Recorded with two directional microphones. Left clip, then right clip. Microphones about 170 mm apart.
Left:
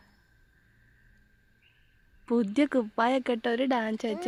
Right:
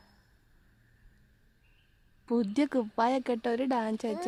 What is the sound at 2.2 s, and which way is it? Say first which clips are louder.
A woman's voice: left 3 dB; 10° left (ahead or behind).